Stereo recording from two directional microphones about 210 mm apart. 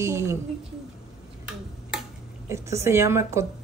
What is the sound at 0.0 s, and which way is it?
Speech, 15° right (ahead or behind).